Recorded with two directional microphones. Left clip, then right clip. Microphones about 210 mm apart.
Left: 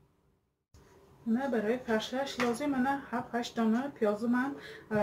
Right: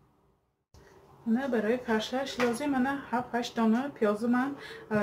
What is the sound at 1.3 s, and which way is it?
Speech, centre (ahead or behind).